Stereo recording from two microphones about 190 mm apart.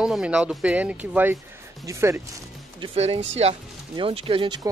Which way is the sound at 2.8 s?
30° right (ahead or behind).